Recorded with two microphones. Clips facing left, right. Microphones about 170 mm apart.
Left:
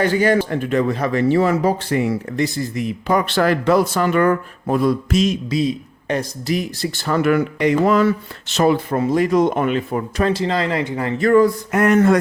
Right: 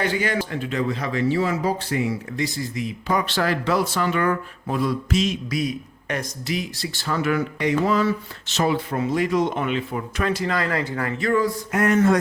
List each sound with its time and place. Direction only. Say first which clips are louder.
0.0 s speech: left 7 dB; 45° left (ahead or behind)
5.5 s speech: left 6 dB; 25° left (ahead or behind)
6.5 s speech: left 6 dB; 50° left (ahead or behind)
8.5 s speech: left 6 dB; 50° left (ahead or behind)
10.2 s speech: left 3 dB; 30° left (ahead or behind)
11.2 s speech: left 9 dB; 55° left (ahead or behind)